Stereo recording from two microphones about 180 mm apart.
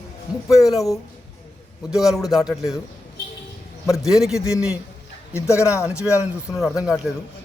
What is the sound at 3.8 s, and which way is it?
Speech, 15° left (ahead or behind).